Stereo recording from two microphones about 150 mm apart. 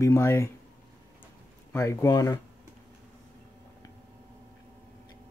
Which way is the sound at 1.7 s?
20° left (ahead or behind).